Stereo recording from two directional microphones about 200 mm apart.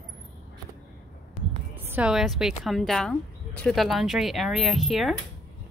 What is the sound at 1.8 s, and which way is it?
Speech, 10° right (ahead or behind).